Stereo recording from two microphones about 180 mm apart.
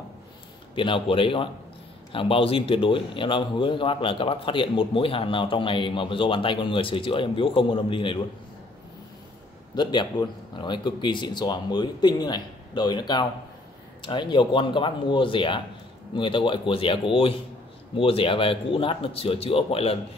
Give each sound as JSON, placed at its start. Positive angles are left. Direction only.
{"t": 0.7, "sound": "a man's voice", "side_deg": 30}
{"t": 9.8, "sound": "a man's voice", "side_deg": 25}